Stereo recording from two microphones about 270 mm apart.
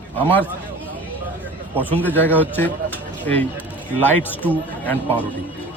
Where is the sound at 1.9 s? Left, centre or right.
Centre.